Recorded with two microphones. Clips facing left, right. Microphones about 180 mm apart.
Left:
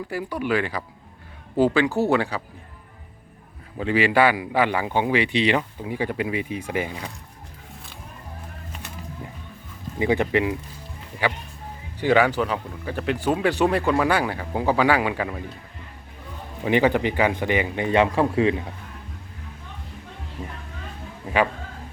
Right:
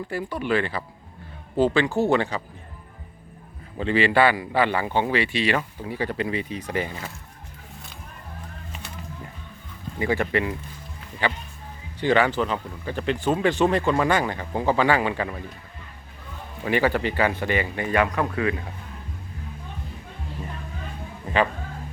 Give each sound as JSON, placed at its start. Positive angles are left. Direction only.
{"t": 0.1, "sound": "speech", "side_deg": 10}
{"t": 3.8, "sound": "speech", "side_deg": 10}
{"t": 10.0, "sound": "speech", "side_deg": 15}
{"t": 11.9, "sound": "speech", "side_deg": 10}
{"t": 16.6, "sound": "speech", "side_deg": 20}
{"t": 20.4, "sound": "speech", "side_deg": 15}